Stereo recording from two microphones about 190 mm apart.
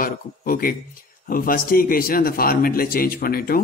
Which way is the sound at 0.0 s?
50° left (ahead or behind).